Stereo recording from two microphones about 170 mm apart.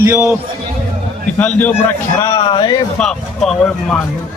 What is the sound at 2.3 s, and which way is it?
Music, 30° left (ahead or behind).